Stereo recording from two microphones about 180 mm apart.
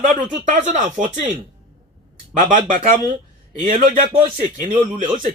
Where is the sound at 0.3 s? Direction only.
45° right (ahead or behind).